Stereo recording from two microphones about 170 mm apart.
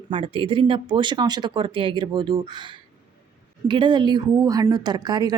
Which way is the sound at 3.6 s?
25° right (ahead or behind).